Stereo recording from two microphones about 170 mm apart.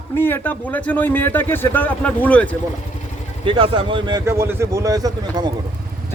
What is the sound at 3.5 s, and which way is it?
Speech, 30° right (ahead or behind).